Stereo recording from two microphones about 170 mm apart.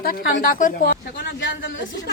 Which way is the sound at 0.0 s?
55° left (ahead or behind).